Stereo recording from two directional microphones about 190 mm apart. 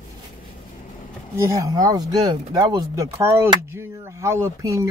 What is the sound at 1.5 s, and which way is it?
Speech, 20° right (ahead or behind).